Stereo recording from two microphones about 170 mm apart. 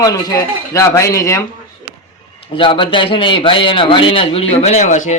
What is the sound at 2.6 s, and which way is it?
A man's voice, 30° left (ahead or behind).